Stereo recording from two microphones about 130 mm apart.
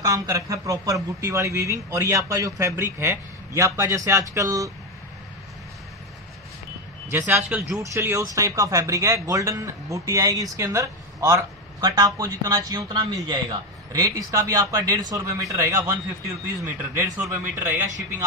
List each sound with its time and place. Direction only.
0.0 s speech: 25° right (ahead or behind)
7.1 s speech: 20° right (ahead or behind)